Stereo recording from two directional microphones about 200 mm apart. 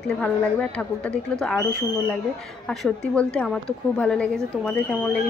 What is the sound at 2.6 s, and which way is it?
A woman's voice, 5° left (ahead or behind).